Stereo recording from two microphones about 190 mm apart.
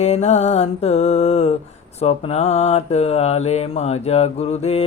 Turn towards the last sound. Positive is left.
turn(degrees=35)  # may be behind; listen again after turning